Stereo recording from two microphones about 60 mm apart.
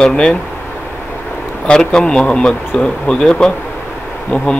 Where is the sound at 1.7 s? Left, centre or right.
Centre.